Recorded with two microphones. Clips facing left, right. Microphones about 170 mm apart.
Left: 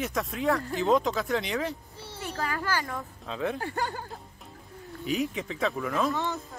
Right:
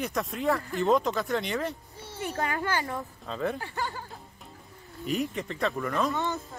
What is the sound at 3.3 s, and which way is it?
Speech, centre (ahead or behind).